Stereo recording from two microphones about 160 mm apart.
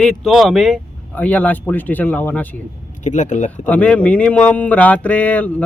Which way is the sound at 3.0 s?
50° left (ahead or behind).